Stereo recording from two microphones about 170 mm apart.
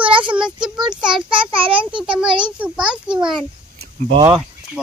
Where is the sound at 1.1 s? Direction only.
30° right (ahead or behind).